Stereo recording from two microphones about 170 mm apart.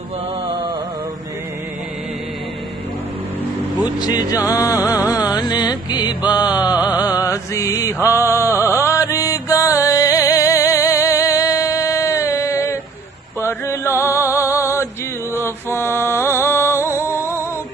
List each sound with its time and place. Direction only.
4.0 s music: 25° left (ahead or behind)
6.3 s mantra: 25° left (ahead or behind)
7.0 s music: 20° left (ahead or behind)
7.5 s mantra: 20° left (ahead or behind)
8.5 s music: 15° left (ahead or behind)